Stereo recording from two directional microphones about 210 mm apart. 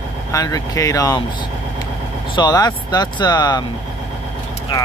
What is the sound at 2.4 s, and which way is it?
Speech, 20° left (ahead or behind).